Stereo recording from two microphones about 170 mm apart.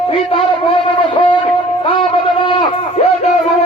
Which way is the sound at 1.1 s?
30° left (ahead or behind).